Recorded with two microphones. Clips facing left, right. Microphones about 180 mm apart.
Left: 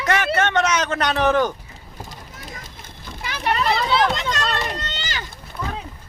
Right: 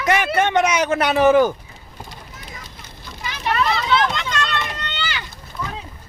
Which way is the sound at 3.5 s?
35° left (ahead or behind).